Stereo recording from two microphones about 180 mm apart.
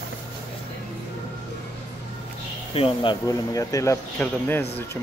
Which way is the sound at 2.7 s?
30° left (ahead or behind).